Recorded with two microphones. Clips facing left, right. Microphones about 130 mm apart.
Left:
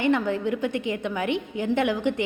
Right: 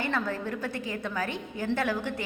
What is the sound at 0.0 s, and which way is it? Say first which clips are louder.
A woman's voice: left 7 dB; 20° left (ahead or behind).